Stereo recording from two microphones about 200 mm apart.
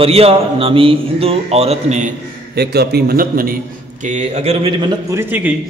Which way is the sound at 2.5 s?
55° right (ahead or behind).